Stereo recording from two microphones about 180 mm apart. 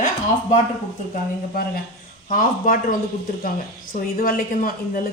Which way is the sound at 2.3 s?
50° left (ahead or behind).